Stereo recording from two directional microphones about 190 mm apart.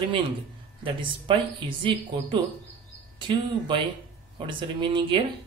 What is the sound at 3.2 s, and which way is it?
Speech, 25° right (ahead or behind).